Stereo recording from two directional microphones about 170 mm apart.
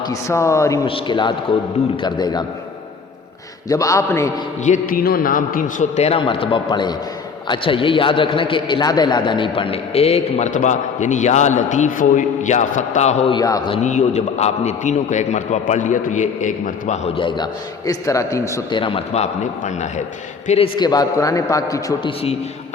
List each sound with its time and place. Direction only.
0.0 s speech: 20° left (ahead or behind)
0.9 s a man's voice: 30° left (ahead or behind)
3.7 s a man's voice: 20° left (ahead or behind)
4.6 s a man's voice: 50° left (ahead or behind)
13.3 s a man's voice: 25° left (ahead or behind)
13.8 s a man's voice: 45° left (ahead or behind)
17.2 s a man's voice: 25° left (ahead or behind)
18.8 s a man's voice: 30° left (ahead or behind)
20.7 s a man's voice: 25° left (ahead or behind)